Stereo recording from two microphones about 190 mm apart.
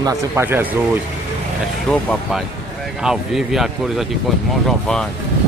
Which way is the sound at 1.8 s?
5° left (ahead or behind).